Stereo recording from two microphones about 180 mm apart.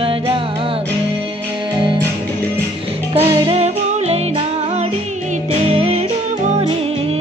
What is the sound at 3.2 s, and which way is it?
Music, 35° right (ahead or behind).